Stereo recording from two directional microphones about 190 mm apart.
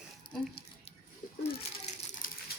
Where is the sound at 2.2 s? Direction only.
45° left (ahead or behind).